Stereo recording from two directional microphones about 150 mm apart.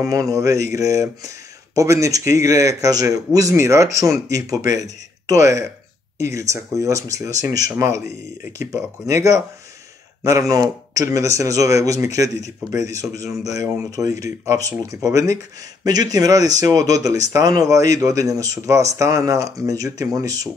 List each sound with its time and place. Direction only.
0.0 s speech: 25° right (ahead or behind)